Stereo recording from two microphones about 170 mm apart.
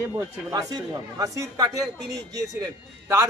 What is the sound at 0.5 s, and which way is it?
A man's voice, 20° right (ahead or behind).